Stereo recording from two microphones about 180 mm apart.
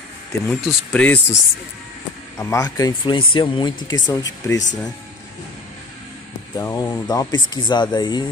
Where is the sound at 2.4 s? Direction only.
15° left (ahead or behind).